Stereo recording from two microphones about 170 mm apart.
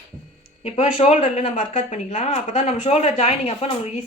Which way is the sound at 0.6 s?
40° left (ahead or behind).